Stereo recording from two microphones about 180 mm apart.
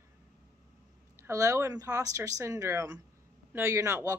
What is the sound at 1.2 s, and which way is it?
A woman's voice, 15° right (ahead or behind).